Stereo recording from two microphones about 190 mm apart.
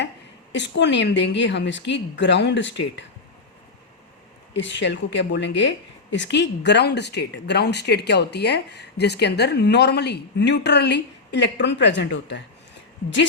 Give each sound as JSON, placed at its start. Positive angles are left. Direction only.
{"t": 0.5, "sound": "speech", "side_deg": 65}
{"t": 4.5, "sound": "speech", "side_deg": 70}